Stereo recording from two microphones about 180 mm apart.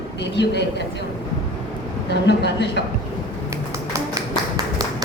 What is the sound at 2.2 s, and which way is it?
Speech, 70° left (ahead or behind).